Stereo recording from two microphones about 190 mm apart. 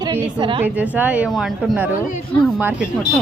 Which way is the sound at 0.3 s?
25° right (ahead or behind).